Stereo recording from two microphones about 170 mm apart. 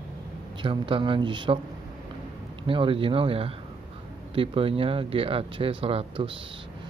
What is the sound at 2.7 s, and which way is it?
Speech, 30° right (ahead or behind).